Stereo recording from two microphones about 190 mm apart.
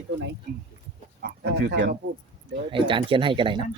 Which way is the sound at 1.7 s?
65° right (ahead or behind).